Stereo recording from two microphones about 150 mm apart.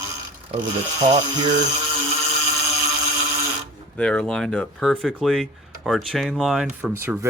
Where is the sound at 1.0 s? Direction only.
30° right (ahead or behind).